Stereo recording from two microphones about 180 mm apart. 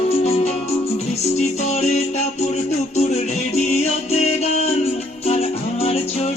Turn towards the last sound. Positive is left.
turn(degrees=35)  # may be behind; listen again after turning